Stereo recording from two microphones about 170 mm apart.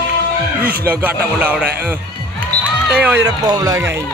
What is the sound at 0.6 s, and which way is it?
Speech, 60° right (ahead or behind).